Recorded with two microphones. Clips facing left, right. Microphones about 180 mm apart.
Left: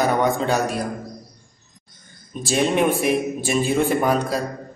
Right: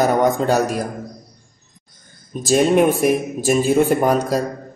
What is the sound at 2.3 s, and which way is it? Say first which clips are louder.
Speech: right 6 dB; 45° right (ahead or behind).